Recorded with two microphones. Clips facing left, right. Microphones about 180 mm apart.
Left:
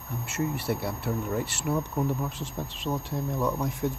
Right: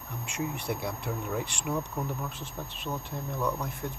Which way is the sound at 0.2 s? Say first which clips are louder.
Left 4 dB; 5° left (ahead or behind).